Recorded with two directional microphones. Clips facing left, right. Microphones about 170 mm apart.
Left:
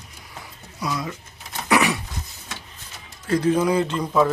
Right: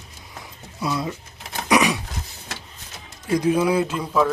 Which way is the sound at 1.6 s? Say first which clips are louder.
Right 1 dB; 15° right (ahead or behind).